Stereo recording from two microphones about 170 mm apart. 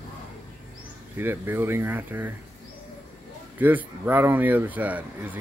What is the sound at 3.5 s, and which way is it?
Speech, 10° right (ahead or behind).